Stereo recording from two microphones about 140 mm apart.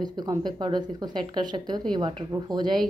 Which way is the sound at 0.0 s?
30° right (ahead or behind).